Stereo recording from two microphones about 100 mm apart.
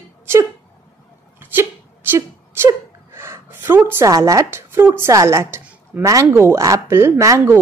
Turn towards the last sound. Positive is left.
turn(degrees=-30)  # may be behind; listen again after turning